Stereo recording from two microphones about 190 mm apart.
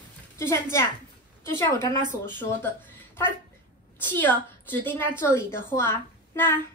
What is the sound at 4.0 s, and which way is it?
A woman's voice, 10° left (ahead or behind).